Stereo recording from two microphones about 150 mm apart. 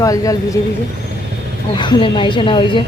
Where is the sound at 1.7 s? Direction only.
35° left (ahead or behind).